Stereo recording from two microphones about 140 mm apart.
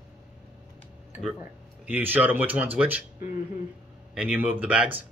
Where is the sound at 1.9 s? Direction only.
10° right (ahead or behind).